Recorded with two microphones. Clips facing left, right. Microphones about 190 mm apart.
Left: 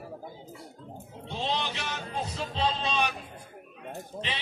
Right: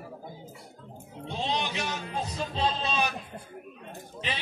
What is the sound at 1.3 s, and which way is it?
Speech, 15° right (ahead or behind).